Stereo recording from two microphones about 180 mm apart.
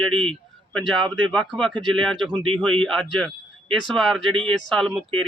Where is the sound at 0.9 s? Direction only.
5° left (ahead or behind).